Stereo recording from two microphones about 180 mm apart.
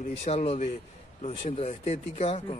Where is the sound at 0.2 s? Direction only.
35° left (ahead or behind).